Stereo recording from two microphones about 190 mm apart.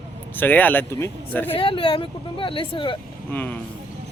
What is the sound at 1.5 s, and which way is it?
Speech, 30° left (ahead or behind).